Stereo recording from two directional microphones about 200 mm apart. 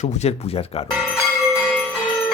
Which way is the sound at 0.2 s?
30° left (ahead or behind).